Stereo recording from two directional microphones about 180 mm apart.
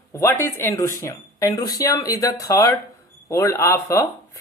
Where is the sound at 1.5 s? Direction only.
60° left (ahead or behind).